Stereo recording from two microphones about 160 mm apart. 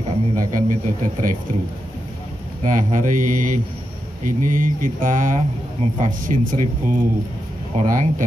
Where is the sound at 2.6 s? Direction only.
55° right (ahead or behind).